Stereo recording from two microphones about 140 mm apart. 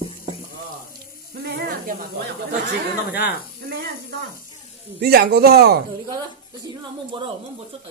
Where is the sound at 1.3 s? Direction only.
90° right.